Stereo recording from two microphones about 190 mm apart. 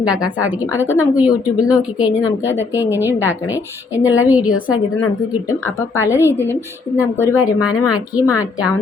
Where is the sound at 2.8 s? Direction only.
10° right (ahead or behind).